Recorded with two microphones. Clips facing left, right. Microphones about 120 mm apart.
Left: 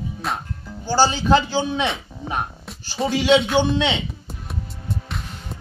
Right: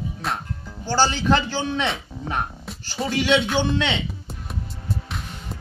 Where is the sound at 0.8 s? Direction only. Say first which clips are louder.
Left 2 dB; 15° left (ahead or behind).